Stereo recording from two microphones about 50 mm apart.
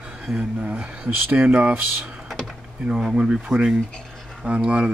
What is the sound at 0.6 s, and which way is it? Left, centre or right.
Speech, right.